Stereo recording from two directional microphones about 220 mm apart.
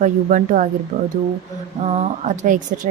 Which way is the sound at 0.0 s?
35° right (ahead or behind).